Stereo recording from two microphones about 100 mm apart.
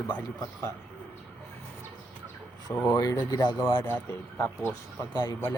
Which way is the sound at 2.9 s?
35° left (ahead or behind).